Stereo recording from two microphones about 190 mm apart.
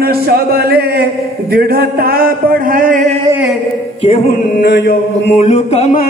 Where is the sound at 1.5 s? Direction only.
55° right (ahead or behind).